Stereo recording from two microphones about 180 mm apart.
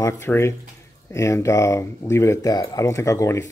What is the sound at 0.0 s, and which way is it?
Speech, 15° left (ahead or behind).